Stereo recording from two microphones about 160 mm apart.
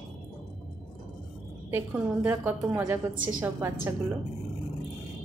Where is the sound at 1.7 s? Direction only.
15° right (ahead or behind).